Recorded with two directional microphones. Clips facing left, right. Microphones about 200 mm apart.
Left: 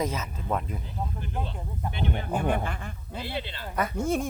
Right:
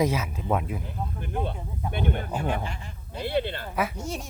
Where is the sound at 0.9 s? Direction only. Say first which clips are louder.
Right 1 dB; 55° right (ahead or behind).